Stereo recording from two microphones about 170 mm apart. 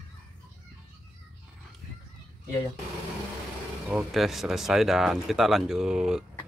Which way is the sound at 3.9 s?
5° right (ahead or behind).